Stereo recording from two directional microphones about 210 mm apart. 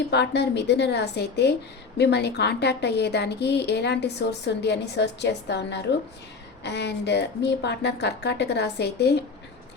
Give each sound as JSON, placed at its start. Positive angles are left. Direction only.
{"t": 0.1, "sound": "a woman's voice", "side_deg": 55}